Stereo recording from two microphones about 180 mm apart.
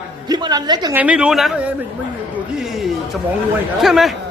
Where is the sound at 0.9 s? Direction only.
5° right (ahead or behind).